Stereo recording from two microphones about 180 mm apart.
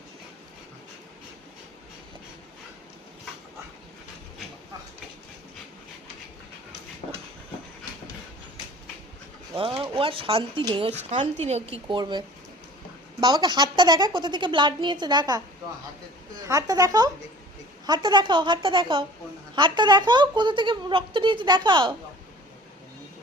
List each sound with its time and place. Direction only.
9.6 s speech: 30° right (ahead or behind)
16.5 s speech: 20° right (ahead or behind)